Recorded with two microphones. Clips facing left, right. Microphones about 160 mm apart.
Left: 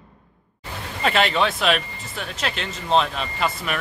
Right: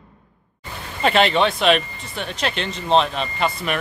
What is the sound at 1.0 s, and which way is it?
Speech, centre (ahead or behind).